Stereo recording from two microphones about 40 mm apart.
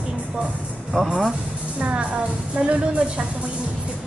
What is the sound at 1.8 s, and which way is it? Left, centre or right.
Speech, right.